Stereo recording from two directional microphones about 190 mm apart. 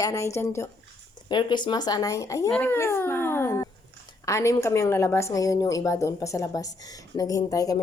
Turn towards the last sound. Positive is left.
turn(degrees=20)  # may be behind; listen again after turning